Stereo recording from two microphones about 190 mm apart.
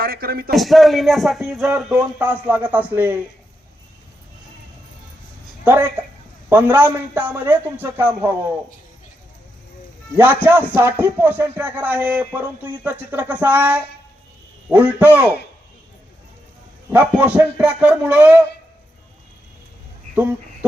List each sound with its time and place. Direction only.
0.0 s a man's voice: 50° right (ahead or behind)
0.5 s speech: centre (ahead or behind)
5.6 s speech: 10° right (ahead or behind)
10.2 s speech: 10° right (ahead or behind)
16.9 s speech: 10° right (ahead or behind)